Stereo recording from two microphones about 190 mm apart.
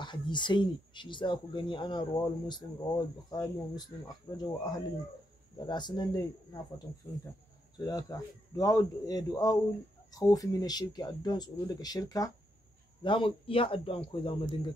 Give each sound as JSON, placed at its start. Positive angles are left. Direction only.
{"t": 0.0, "sound": "speech", "side_deg": 25}
{"t": 7.8, "sound": "speech", "side_deg": 20}